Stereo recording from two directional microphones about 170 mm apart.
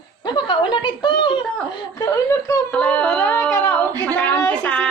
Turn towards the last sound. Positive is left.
turn(degrees=5)  # may be behind; listen again after turning